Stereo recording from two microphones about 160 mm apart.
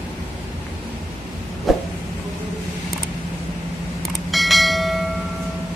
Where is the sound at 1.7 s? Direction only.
Centre (ahead or behind).